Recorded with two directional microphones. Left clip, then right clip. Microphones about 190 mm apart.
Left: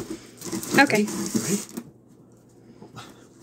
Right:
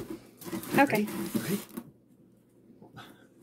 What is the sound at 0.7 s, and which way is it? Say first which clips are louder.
Speech: left 6 dB; 5° right (ahead or behind).